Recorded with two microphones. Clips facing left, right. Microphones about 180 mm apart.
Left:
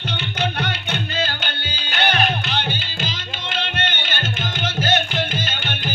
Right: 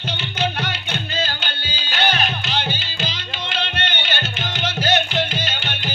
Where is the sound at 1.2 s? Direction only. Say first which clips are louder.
Left 1 dB; 55° left (ahead or behind).